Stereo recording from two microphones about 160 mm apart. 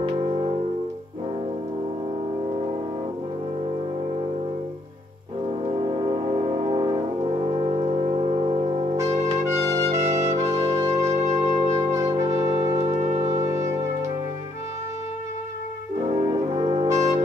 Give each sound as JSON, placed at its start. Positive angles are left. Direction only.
{"t": 0.0, "sound": "music", "side_deg": -35}
{"t": 5.7, "sound": "brass instrument", "side_deg": -35}
{"t": 9.9, "sound": "music", "side_deg": -45}
{"t": 10.3, "sound": "music", "side_deg": -20}
{"t": 11.0, "sound": "music", "side_deg": -45}
{"t": 11.7, "sound": "trumpet", "side_deg": -20}
{"t": 13.2, "sound": "music", "side_deg": -20}
{"t": 16.0, "sound": "brass instrument", "side_deg": -30}
{"t": 16.8, "sound": "brass instrument", "side_deg": -20}